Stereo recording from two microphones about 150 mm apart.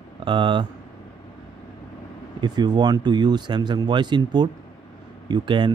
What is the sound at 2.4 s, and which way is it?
Speech, 30° right (ahead or behind).